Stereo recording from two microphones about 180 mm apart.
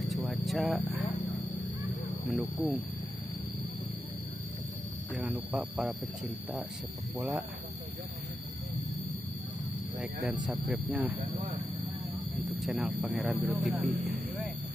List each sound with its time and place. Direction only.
0.1 s a sound: centre (ahead or behind)
2.3 s speech: centre (ahead or behind)
5.3 s speech: 10° right (ahead or behind)
7.2 s speech: 5° right (ahead or behind)
9.9 s speech: 5° right (ahead or behind)
11.1 s speech: 30° right (ahead or behind)
12.4 s speech: centre (ahead or behind)